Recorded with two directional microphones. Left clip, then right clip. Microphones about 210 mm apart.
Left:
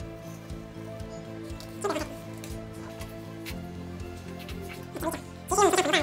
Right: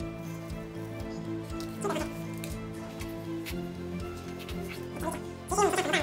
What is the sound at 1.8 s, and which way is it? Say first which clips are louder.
Music: left 3 dB; 5° left (ahead or behind).